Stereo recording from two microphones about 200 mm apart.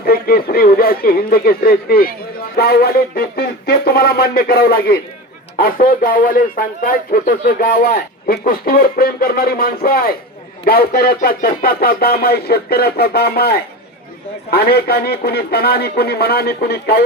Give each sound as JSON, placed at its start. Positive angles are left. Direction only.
{"t": 0.0, "sound": "speech", "side_deg": 50}